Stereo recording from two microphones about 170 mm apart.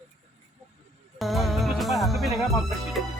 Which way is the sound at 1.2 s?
Centre (ahead or behind).